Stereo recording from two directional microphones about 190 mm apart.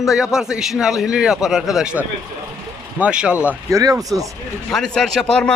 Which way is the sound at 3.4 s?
15° right (ahead or behind).